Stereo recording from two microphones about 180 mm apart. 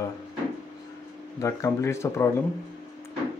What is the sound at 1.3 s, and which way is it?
Speech, 20° left (ahead or behind).